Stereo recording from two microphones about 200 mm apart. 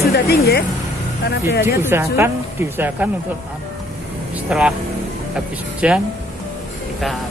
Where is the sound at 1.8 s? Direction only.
10° right (ahead or behind).